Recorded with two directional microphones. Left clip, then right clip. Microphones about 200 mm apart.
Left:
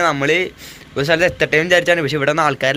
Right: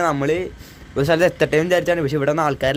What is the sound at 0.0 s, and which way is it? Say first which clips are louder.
Speech: left 4 dB; 15° right (ahead or behind).